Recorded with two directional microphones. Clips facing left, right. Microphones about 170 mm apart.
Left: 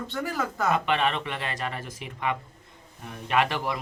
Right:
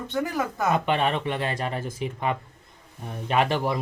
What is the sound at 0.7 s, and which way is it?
Speech, 40° right (ahead or behind).